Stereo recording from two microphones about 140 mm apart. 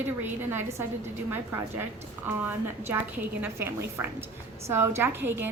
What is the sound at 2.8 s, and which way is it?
A woman's voice, 15° right (ahead or behind).